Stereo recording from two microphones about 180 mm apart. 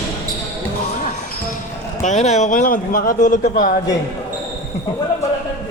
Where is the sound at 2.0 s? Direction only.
40° left (ahead or behind).